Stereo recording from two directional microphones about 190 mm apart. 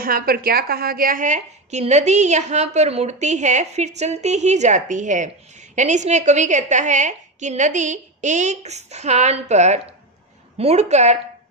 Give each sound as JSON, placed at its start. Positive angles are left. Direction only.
{"t": 0.0, "sound": "a woman's voice", "side_deg": -50}